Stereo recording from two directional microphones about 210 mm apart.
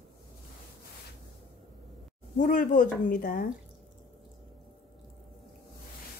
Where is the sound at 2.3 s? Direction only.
35° left (ahead or behind).